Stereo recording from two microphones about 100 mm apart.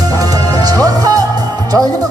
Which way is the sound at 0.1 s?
40° right (ahead or behind).